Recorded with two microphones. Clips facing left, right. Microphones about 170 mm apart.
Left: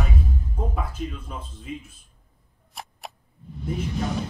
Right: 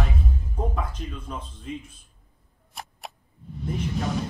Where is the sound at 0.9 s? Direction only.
5° left (ahead or behind).